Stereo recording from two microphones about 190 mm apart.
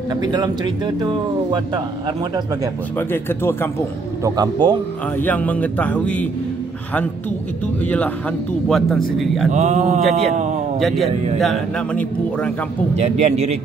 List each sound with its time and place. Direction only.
0.1 s speech: 20° right (ahead or behind)
3.0 s speech: 10° left (ahead or behind)
4.2 s speech: 20° right (ahead or behind)
5.2 s speech: 10° left (ahead or behind)
8.6 s speech: centre (ahead or behind)
9.5 s a man's voice: 40° right (ahead or behind)
10.8 s speech: centre (ahead or behind)
12.9 s a man's voice: 35° right (ahead or behind)